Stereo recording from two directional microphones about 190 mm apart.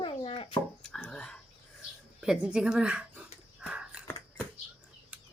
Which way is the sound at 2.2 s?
5° right (ahead or behind).